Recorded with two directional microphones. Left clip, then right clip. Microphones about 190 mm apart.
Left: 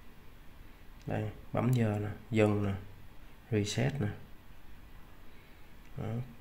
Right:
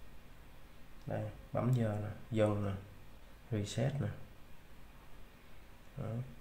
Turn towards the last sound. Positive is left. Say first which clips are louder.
# left 4 dB
turn(degrees=10)  # may be behind; listen again after turning